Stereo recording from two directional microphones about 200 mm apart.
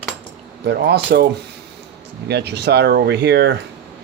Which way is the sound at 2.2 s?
55° right (ahead or behind).